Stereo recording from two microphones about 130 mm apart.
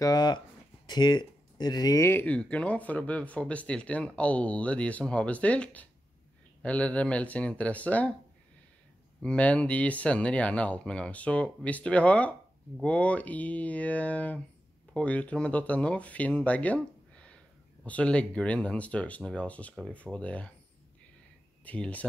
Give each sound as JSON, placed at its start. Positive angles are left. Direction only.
{"t": 0.0, "sound": "speech", "side_deg": 30}
{"t": 9.2, "sound": "speech", "side_deg": 10}
{"t": 21.6, "sound": "speech", "side_deg": 10}